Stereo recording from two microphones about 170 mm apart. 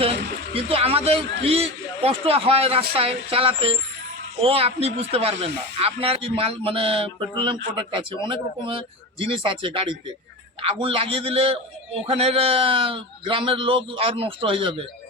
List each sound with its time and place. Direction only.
0.0 s a man's voice: 35° right (ahead or behind)